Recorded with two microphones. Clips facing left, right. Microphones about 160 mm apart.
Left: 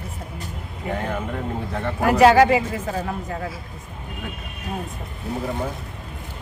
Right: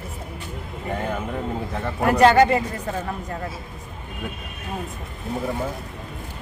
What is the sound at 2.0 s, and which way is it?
Speech, centre (ahead or behind).